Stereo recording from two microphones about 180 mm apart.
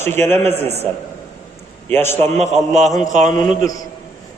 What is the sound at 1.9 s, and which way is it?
Speech, 15° left (ahead or behind).